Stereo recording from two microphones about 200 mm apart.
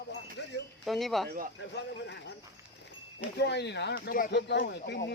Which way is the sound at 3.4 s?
55° left (ahead or behind).